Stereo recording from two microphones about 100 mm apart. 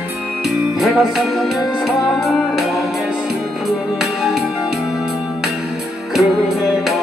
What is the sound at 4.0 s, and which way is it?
Music, 5° right (ahead or behind).